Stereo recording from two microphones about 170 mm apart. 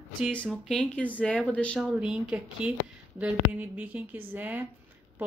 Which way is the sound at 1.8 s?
5° right (ahead or behind).